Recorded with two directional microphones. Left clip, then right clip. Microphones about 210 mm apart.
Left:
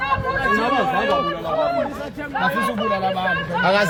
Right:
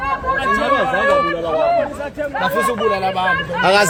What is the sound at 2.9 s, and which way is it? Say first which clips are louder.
Speech: right 3 dB; 55° right (ahead or behind).